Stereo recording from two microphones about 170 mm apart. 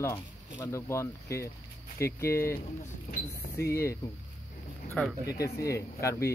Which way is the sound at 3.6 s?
15° left (ahead or behind).